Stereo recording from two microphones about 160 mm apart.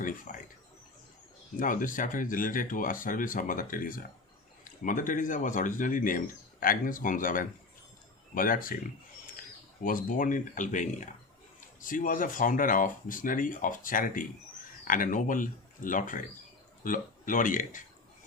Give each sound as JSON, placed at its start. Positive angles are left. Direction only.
{"t": 0.3, "sound": "speech", "side_deg": 55}
{"t": 1.5, "sound": "speech", "side_deg": 55}
{"t": 9.8, "sound": "speech", "side_deg": 60}